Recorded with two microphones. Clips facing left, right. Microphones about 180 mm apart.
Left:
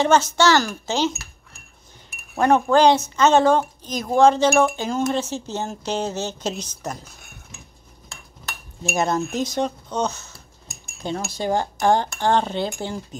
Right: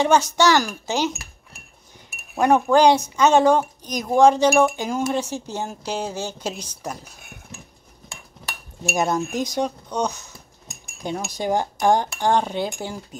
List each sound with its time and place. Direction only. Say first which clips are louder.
0.0 s speech: even; 15° right (ahead or behind)
2.3 s speech: even; 10° right (ahead or behind)
8.9 s speech: even; 15° right (ahead or behind)